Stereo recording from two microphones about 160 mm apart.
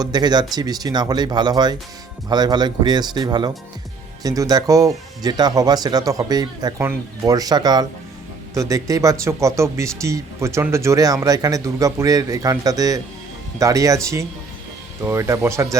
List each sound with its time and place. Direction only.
0.0 s speech: 25° right (ahead or behind)